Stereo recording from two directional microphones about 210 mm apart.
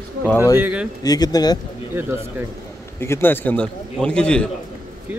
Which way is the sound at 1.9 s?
10° right (ahead or behind).